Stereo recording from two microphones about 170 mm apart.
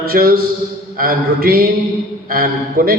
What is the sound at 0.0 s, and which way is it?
Mantra, 60° right (ahead or behind).